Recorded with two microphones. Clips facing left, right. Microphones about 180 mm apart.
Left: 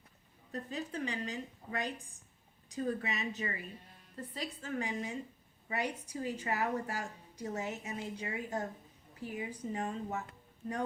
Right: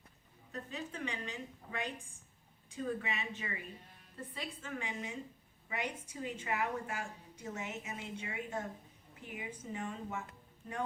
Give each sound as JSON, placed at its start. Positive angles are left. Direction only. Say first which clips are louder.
{"t": 0.5, "sound": "a woman's voice", "louder": "left 4 dB", "side_deg": 35}